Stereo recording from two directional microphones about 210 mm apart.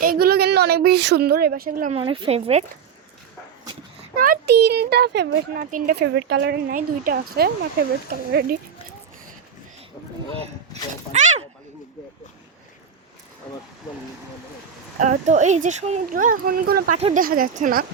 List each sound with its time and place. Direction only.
0.0 s a woman's voice: 45° right (ahead or behind)
2.0 s a woman's voice: 25° right (ahead or behind)
4.1 s speech: 45° right (ahead or behind)
11.1 s speech: 35° right (ahead or behind)
14.9 s speech: 35° right (ahead or behind)